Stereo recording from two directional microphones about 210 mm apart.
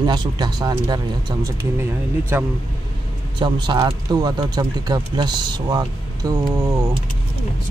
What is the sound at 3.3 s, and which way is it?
Speech, 20° right (ahead or behind).